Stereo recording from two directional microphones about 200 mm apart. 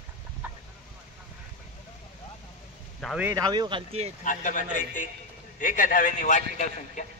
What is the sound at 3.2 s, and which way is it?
Speech, 15° right (ahead or behind).